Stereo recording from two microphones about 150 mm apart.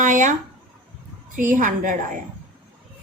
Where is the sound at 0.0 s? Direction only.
55° right (ahead or behind).